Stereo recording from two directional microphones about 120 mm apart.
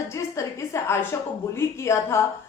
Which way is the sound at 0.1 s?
25° left (ahead or behind).